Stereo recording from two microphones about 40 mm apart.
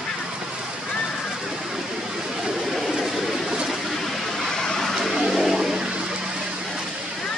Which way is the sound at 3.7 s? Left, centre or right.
Centre.